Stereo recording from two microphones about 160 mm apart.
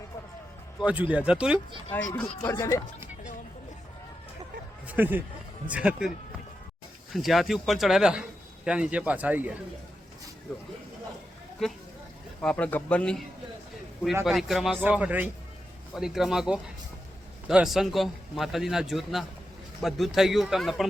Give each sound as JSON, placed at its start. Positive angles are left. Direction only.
{"t": 0.8, "sound": "speech", "side_deg": -10}
{"t": 1.9, "sound": "speech", "side_deg": 15}
{"t": 4.9, "sound": "speech", "side_deg": -10}
{"t": 7.1, "sound": "a man's voice", "side_deg": 0}
{"t": 11.6, "sound": "a man's voice", "side_deg": 0}
{"t": 14.3, "sound": "a man's voice", "side_deg": 0}